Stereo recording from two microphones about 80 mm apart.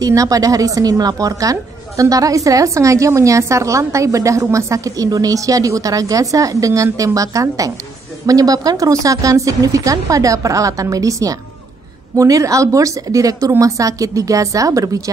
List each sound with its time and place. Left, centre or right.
0.0 s a woman's voice: right